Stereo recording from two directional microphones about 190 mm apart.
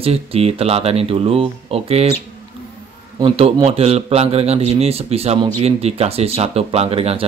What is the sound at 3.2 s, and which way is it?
A man's voice, 30° right (ahead or behind).